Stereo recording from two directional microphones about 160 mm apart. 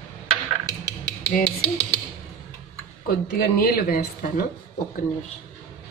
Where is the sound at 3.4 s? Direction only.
70° left (ahead or behind).